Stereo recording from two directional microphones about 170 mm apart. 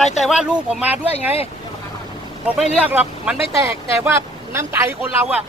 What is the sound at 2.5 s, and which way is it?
A woman's voice, 5° right (ahead or behind).